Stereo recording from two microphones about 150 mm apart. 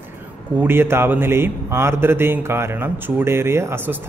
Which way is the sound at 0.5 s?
15° right (ahead or behind).